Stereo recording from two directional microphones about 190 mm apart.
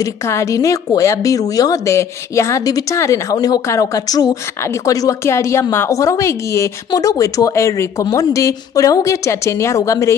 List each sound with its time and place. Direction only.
0.0 s a woman's voice: 15° left (ahead or behind)